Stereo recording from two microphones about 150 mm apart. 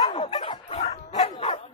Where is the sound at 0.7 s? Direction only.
50° left (ahead or behind).